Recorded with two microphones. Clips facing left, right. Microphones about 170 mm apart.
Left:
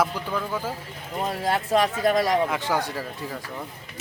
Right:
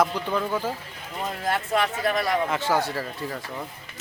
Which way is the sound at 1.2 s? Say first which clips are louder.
Left 2 dB; 30° left (ahead or behind).